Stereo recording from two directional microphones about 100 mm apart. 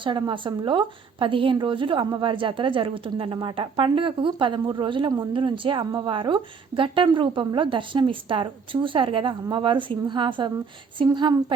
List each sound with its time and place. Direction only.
0.2 s a woman's voice: 55° right (ahead or behind)